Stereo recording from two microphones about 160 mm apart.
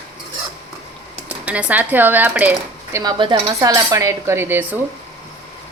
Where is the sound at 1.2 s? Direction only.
10° right (ahead or behind).